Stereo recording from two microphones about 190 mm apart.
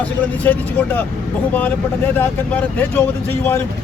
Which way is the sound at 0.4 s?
10° left (ahead or behind).